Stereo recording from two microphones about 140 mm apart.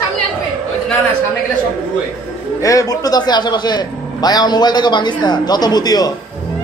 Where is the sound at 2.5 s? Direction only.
25° left (ahead or behind).